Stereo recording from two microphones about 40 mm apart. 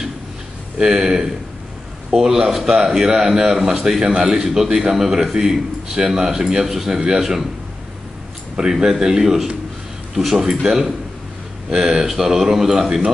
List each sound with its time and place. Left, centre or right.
0.7 s a man's voice: centre
8.5 s a man's voice: centre
10.4 s a man's voice: centre